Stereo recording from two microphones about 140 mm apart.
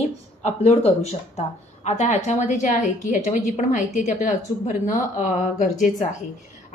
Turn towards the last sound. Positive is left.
turn(degrees=60)  # may be behind; listen again after turning